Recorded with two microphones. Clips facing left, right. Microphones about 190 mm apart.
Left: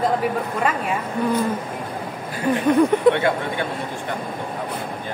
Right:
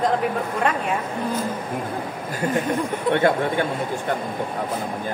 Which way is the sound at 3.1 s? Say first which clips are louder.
Left 3 dB; 70° left (ahead or behind).